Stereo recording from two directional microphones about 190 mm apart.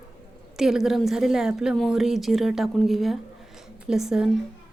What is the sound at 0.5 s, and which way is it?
A woman's voice, centre (ahead or behind).